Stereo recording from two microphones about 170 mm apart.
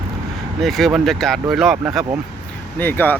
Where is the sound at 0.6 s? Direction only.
Centre (ahead or behind).